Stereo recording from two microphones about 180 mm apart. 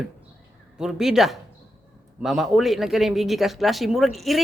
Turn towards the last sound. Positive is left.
turn(degrees=0)  # may be behind; listen again after turning